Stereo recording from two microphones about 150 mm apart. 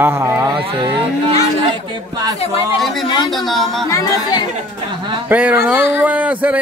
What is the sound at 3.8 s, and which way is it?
Speech, 20° left (ahead or behind).